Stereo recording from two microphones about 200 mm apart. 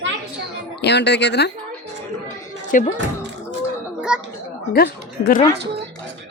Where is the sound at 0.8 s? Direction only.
60° left (ahead or behind).